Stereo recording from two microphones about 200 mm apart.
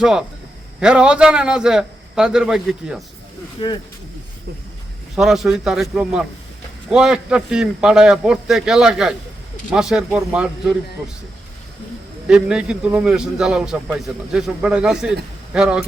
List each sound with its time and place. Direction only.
0.0 s a man's voice: 5° right (ahead or behind)
3.6 s speech: 25° left (ahead or behind)
5.1 s a man's voice: centre (ahead or behind)
12.3 s a man's voice: 5° right (ahead or behind)